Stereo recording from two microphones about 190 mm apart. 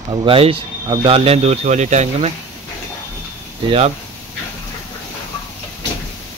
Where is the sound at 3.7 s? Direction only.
35° right (ahead or behind).